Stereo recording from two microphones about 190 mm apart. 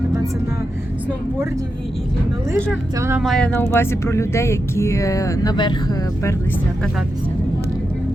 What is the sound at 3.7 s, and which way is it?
Speech, 15° left (ahead or behind).